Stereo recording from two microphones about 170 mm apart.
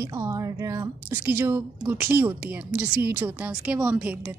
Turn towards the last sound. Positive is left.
turn(degrees=-5)  # may be behind; listen again after turning